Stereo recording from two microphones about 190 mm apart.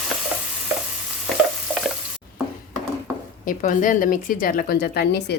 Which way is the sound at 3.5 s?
45° left (ahead or behind).